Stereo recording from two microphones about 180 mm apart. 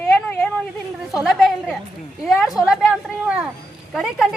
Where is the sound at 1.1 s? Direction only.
Centre (ahead or behind).